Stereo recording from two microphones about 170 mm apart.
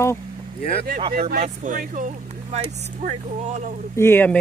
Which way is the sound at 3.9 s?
15° left (ahead or behind).